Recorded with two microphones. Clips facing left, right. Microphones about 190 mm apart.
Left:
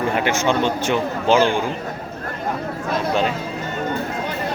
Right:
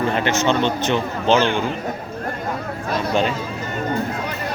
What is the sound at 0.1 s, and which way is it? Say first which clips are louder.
A man's voice: even; 10° left (ahead or behind).